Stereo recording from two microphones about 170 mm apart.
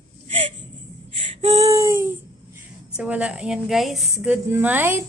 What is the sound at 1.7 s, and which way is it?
A woman's voice, 20° right (ahead or behind).